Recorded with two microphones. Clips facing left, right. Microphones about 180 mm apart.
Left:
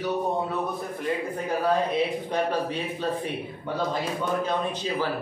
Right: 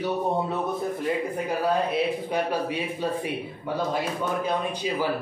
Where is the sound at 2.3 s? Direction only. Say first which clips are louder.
Even; 10° right (ahead or behind).